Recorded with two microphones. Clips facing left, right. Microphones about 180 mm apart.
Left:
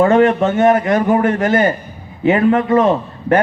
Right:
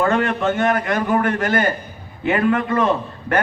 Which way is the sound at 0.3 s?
40° left (ahead or behind).